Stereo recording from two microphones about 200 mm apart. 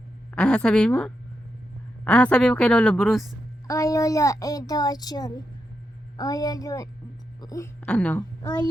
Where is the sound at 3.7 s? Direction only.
15° left (ahead or behind).